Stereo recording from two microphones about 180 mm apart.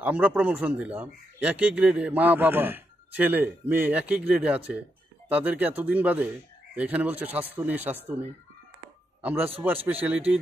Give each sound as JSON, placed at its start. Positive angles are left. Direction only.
{"t": 0.0, "sound": "a man's voice", "side_deg": -10}